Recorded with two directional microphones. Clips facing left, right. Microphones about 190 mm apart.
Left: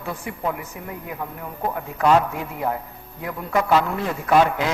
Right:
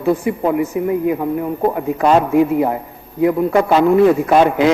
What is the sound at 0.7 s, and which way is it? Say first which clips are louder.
Speech: right 17 dB; 10° right (ahead or behind).